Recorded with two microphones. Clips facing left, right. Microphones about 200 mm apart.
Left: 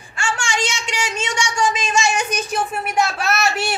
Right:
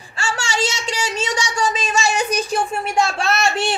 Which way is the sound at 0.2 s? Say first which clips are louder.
Right 1 dB; 40° right (ahead or behind).